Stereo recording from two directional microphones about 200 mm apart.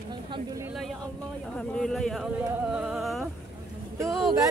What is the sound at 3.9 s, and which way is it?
Speech, 15° right (ahead or behind).